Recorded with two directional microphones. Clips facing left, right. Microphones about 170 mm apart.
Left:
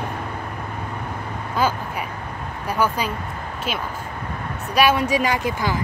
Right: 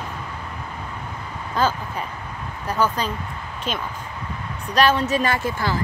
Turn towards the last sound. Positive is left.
turn(degrees=15)  # may be behind; listen again after turning